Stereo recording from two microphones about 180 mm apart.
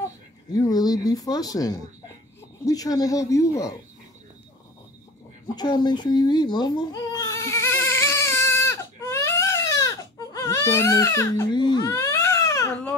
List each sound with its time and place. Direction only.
0.5 s speech: 20° left (ahead or behind)
5.6 s speech: 25° left (ahead or behind)
7.7 s baby cry: 15° left (ahead or behind)